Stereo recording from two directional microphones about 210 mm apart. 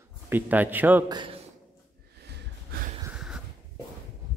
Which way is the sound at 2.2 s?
45° right (ahead or behind).